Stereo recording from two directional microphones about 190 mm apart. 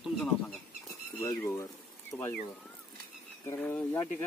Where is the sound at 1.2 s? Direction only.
15° left (ahead or behind).